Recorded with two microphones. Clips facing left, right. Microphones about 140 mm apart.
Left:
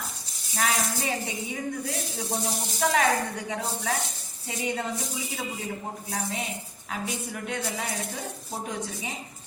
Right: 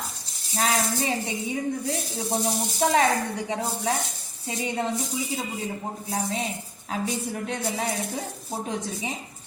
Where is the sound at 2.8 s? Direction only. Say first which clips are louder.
Right 2 dB; 25° right (ahead or behind).